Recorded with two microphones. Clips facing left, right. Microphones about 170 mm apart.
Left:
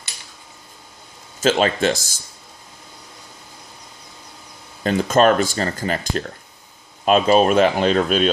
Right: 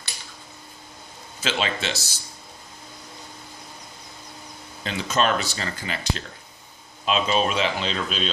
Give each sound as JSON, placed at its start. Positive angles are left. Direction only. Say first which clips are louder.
{"t": 1.4, "sound": "speech", "louder": "left 9 dB", "side_deg": 45}
{"t": 4.8, "sound": "speech", "louder": "left 8 dB", "side_deg": 45}